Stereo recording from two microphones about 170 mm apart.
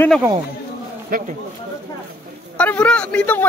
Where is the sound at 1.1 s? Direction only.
60° right (ahead or behind).